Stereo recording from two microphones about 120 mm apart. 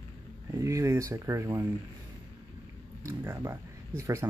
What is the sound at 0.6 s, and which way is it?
Speech, 25° right (ahead or behind).